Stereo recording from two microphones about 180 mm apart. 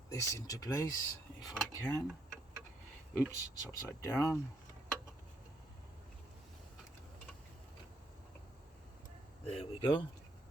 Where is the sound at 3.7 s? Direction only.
20° left (ahead or behind).